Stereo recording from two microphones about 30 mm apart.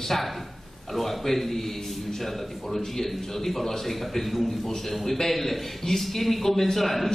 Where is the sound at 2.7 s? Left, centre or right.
Centre.